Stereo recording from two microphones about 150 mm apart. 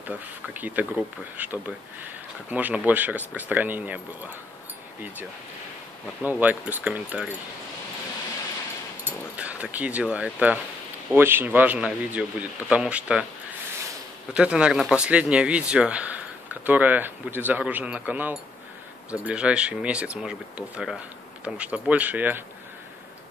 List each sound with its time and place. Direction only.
0.0 s a man's voice: 10° right (ahead or behind)
6.2 s a man's voice: 10° right (ahead or behind)
9.0 s a man's voice: 10° right (ahead or behind)
14.3 s a man's voice: 5° right (ahead or behind)